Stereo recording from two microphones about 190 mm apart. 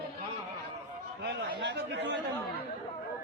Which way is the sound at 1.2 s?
70° right (ahead or behind).